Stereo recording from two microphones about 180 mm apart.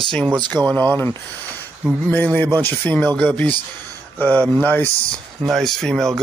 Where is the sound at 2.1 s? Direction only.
10° left (ahead or behind).